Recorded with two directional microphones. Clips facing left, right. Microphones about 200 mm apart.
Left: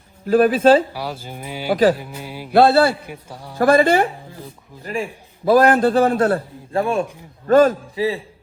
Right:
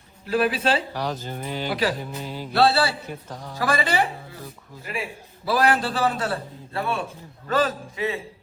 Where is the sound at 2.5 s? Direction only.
50° left (ahead or behind).